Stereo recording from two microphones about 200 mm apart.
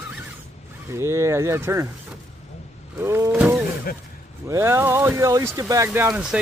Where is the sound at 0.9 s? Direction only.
15° right (ahead or behind).